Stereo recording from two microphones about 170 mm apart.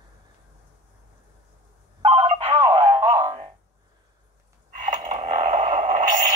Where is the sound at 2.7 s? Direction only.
15° right (ahead or behind).